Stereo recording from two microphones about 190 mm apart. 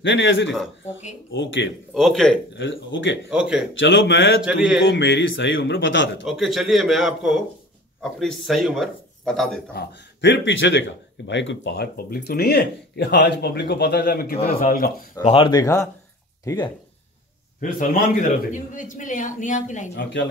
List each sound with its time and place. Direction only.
0.0 s speech: 75° left (ahead or behind)
2.0 s a man's voice: centre (ahead or behind)
2.5 s speech: 75° left (ahead or behind)
3.3 s a man's voice: 5° right (ahead or behind)
3.7 s speech: 70° left (ahead or behind)
4.4 s a man's voice: 5° right (ahead or behind)
4.7 s speech: 65° left (ahead or behind)
6.2 s a man's voice: centre (ahead or behind)
9.8 s speech: 65° left (ahead or behind); by 15.0 s 50° left (ahead or behind)
15.2 s speech: 25° left (ahead or behind)
17.6 s a man's voice: 45° left (ahead or behind)